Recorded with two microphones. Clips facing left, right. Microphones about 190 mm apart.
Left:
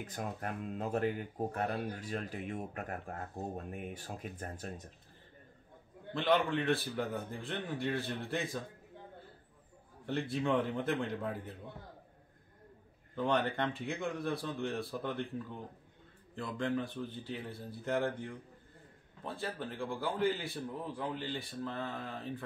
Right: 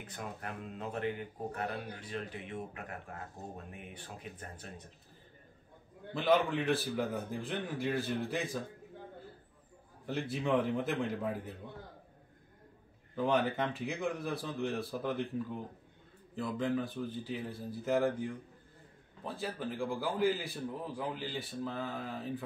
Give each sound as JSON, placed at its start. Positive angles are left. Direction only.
{"t": 0.0, "sound": "speech", "side_deg": 45}
{"t": 6.1, "sound": "a man's voice", "side_deg": 0}
{"t": 10.0, "sound": "a man's voice", "side_deg": 0}
{"t": 13.1, "sound": "a man's voice", "side_deg": -5}